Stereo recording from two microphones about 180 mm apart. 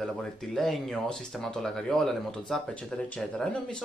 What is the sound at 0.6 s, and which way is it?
Speech, 5° left (ahead or behind).